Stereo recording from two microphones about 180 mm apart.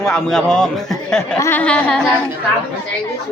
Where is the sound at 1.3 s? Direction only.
15° left (ahead or behind).